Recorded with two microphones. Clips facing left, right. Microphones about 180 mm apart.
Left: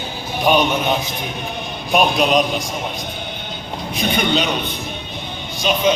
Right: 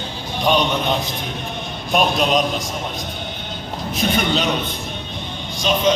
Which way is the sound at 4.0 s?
Centre (ahead or behind).